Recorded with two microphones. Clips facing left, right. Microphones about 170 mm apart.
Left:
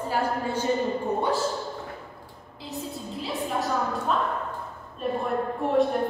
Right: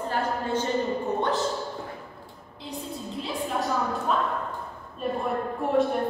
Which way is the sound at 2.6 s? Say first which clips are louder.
Even; centre (ahead or behind).